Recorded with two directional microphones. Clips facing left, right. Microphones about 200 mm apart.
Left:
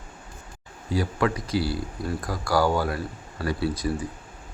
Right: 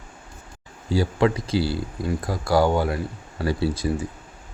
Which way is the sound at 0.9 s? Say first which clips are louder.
Right 4 dB; 25° right (ahead or behind).